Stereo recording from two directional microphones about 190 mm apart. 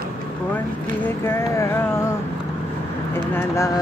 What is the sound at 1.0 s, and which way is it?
Speech, 10° left (ahead or behind).